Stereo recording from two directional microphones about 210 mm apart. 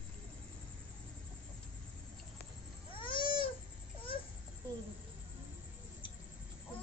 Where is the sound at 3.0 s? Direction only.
25° left (ahead or behind).